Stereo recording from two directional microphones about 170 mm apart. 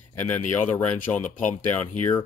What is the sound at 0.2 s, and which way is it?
Speech, 10° left (ahead or behind).